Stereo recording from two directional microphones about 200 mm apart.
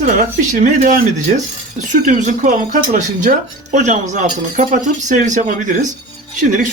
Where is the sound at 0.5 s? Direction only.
40° right (ahead or behind).